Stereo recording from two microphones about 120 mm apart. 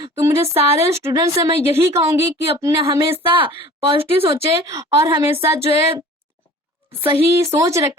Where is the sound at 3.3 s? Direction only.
45° right (ahead or behind).